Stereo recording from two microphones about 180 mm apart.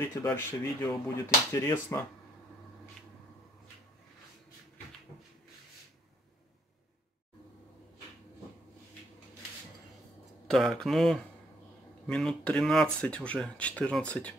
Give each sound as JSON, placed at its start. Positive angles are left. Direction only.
{"t": 0.0, "sound": "speech", "side_deg": 15}
{"t": 10.5, "sound": "speech", "side_deg": 0}